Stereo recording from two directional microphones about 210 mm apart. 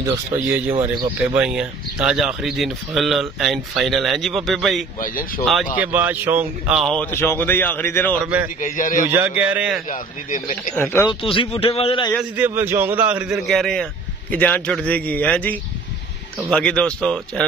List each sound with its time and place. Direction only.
1.1 s speech: 5° right (ahead or behind)
5.0 s a man's voice: 40° left (ahead or behind)
5.4 s speech: centre (ahead or behind)
7.0 s speech: 10° left (ahead or behind)
8.2 s speech: 5° right (ahead or behind)
8.5 s a man's voice: 40° left (ahead or behind)
9.1 s speech: 10° right (ahead or behind)
9.8 s a man's voice: 40° left (ahead or behind)
10.8 s speech: 10° left (ahead or behind)
11.1 s a man's voice: 25° left (ahead or behind)
12.1 s speech: 5° right (ahead or behind)